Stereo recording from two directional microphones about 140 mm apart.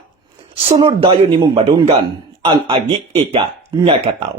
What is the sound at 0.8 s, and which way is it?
Speech, 35° right (ahead or behind).